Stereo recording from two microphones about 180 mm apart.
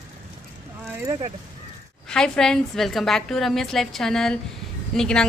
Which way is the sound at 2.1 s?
5° left (ahead or behind).